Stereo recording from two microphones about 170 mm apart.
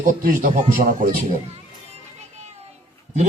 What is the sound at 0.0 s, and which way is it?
A man's voice, 50° right (ahead or behind).